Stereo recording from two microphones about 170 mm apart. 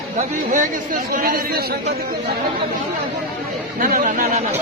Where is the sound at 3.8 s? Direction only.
50° right (ahead or behind).